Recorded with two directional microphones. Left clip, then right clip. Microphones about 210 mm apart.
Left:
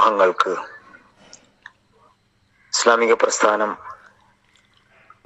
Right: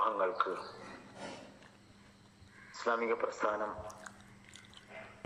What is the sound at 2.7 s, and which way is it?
Speech, 50° left (ahead or behind).